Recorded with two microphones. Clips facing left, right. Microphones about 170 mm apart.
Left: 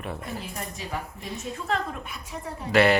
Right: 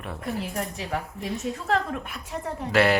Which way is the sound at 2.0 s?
70° right (ahead or behind).